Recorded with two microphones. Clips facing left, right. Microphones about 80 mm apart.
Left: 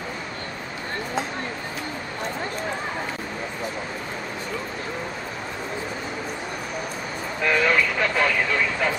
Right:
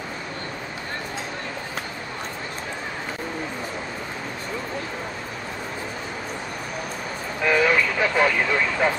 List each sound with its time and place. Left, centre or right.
7.4 s vehicle: centre
8.8 s speech: right